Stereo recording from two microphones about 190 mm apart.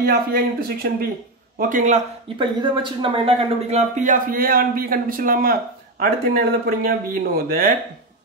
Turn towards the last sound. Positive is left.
turn(degrees=-50)  # may be behind; listen again after turning